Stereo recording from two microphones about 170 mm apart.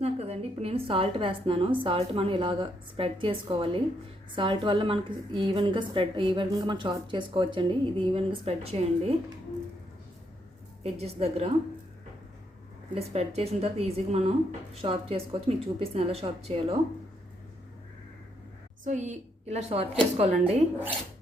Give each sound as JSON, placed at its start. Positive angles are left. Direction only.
{"t": 0.0, "sound": "a woman's voice", "side_deg": -35}
{"t": 10.9, "sound": "a woman's voice", "side_deg": -35}
{"t": 12.9, "sound": "a woman's voice", "side_deg": -35}
{"t": 18.9, "sound": "a woman's voice", "side_deg": -45}